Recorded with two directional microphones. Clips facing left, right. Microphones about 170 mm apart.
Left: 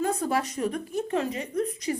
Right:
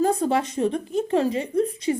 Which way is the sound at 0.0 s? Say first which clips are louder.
Right 5 dB; 30° right (ahead or behind).